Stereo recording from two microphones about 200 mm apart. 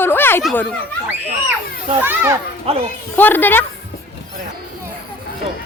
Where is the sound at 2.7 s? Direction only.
30° right (ahead or behind).